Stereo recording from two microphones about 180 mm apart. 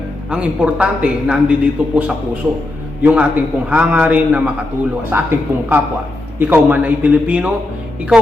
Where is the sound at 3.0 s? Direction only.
5° right (ahead or behind).